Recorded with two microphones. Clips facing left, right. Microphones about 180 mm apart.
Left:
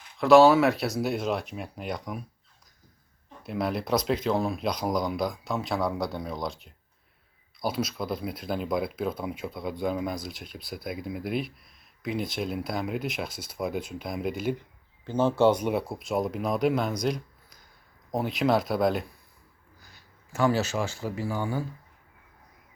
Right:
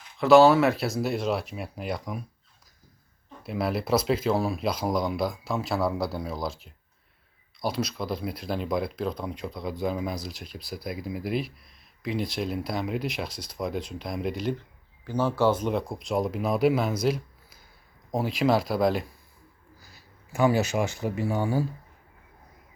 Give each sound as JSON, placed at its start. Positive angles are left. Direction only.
{"t": 0.2, "sound": "speech", "side_deg": 0}
{"t": 3.4, "sound": "speech", "side_deg": 0}
{"t": 15.0, "sound": "speech", "side_deg": 25}
{"t": 19.8, "sound": "a sound", "side_deg": -5}
{"t": 20.4, "sound": "speech", "side_deg": -15}